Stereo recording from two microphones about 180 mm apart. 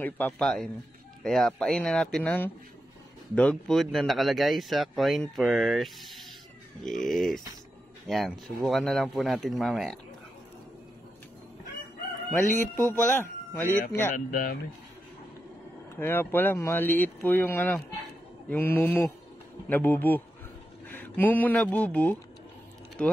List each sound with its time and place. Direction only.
0.0 s speech: 5° left (ahead or behind)
12.4 s speech: 45° left (ahead or behind)
13.2 s a sound: 10° left (ahead or behind)
13.7 s speech: 50° left (ahead or behind)
16.0 s speech: 10° left (ahead or behind)